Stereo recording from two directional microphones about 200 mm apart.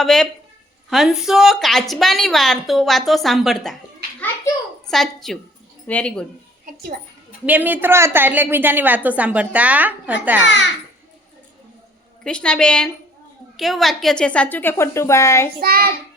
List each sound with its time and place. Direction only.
0.0 s a woman's voice: centre (ahead or behind)
4.9 s a woman's voice: centre (ahead or behind)
7.4 s a woman's voice: 10° right (ahead or behind)
12.2 s a woman's voice: 5° left (ahead or behind)
15.6 s child singing: 50° right (ahead or behind)